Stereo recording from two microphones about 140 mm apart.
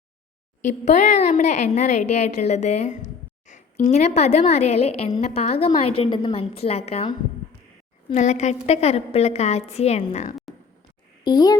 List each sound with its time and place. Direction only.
0.6 s a woman's voice: 60° left (ahead or behind)
8.1 s a woman's voice: 55° left (ahead or behind)
11.2 s a child's voice: 30° left (ahead or behind)